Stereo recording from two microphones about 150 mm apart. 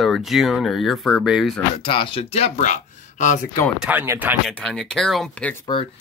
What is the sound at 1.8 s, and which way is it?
Speech, 35° left (ahead or behind).